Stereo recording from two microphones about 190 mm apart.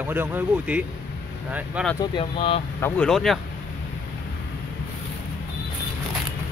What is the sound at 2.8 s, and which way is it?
Speech, 5° left (ahead or behind).